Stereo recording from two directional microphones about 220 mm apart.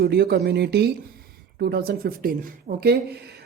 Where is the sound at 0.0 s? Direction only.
45° right (ahead or behind).